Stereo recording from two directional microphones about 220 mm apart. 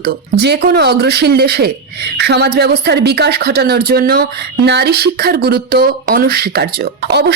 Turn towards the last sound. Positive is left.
turn(degrees=-45)  # may be behind; listen again after turning